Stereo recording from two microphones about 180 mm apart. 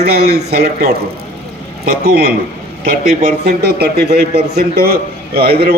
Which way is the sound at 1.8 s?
60° right (ahead or behind).